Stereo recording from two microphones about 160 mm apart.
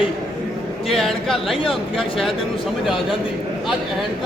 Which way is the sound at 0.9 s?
Centre (ahead or behind).